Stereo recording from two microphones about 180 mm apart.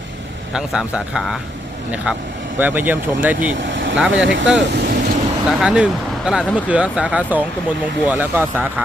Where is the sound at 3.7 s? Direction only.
90° right.